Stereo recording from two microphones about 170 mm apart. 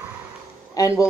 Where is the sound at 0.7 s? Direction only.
20° left (ahead or behind).